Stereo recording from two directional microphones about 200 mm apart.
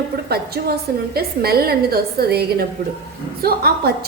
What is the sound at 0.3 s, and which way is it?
A woman's voice, 50° right (ahead or behind).